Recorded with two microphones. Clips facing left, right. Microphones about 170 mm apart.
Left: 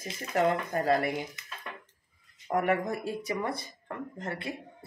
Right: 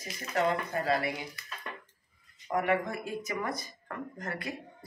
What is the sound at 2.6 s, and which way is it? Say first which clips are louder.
Speech: left 1 dB; 45° left (ahead or behind).